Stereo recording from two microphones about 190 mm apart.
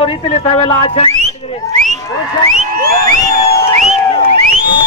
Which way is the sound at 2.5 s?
40° right (ahead or behind).